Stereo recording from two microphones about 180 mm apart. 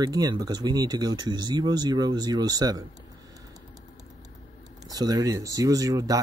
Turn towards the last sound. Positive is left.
turn(degrees=-20)  # may be behind; listen again after turning